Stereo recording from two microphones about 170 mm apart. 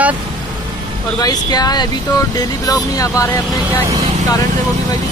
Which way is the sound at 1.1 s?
20° left (ahead or behind).